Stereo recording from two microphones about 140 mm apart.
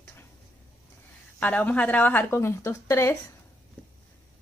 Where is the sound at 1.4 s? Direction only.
10° left (ahead or behind).